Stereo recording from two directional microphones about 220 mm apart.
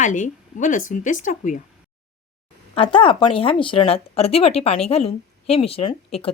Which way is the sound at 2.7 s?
25° left (ahead or behind).